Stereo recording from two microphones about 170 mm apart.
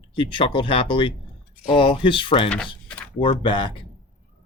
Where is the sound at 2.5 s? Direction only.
5° left (ahead or behind).